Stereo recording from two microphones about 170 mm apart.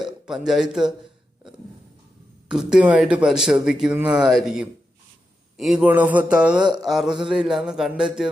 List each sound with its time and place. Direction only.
0.0 s a man's voice: centre (ahead or behind)
2.5 s speech: 5° right (ahead or behind)